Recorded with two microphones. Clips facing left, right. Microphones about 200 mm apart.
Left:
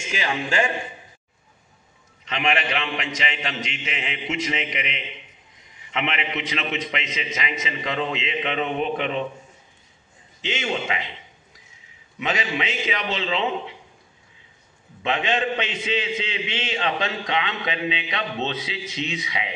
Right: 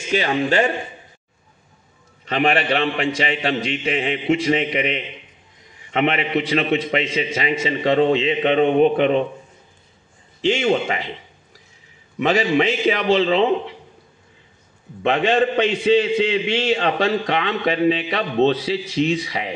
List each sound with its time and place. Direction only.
0.1 s a man's voice: 40° right (ahead or behind)
2.2 s a man's voice: 35° right (ahead or behind)
10.6 s a man's voice: 40° right (ahead or behind)
12.2 s a man's voice: 35° right (ahead or behind)
15.0 s a man's voice: 40° right (ahead or behind)